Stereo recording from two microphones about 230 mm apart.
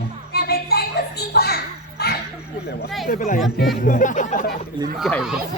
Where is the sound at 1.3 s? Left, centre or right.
Left.